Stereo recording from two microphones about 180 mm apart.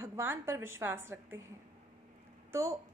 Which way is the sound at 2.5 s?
15° right (ahead or behind).